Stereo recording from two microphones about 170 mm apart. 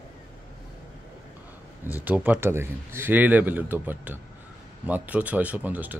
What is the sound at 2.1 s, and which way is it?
Speech, 10° right (ahead or behind).